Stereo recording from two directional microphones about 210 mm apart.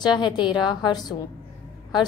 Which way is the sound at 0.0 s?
20° left (ahead or behind).